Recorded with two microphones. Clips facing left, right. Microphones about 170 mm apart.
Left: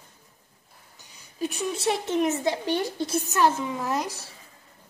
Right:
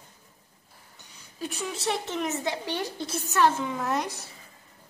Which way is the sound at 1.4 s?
15° left (ahead or behind).